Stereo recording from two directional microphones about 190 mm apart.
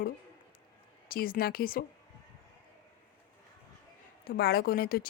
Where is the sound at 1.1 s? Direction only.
50° left (ahead or behind).